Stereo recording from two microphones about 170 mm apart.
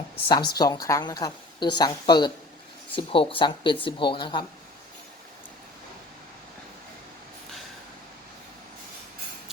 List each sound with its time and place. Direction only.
0.3 s a woman's voice: 25° left (ahead or behind)